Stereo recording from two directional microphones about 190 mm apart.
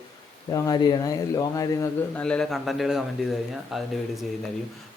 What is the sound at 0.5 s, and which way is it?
Speech, 20° left (ahead or behind).